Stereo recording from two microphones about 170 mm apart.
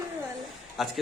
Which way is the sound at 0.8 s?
Centre (ahead or behind).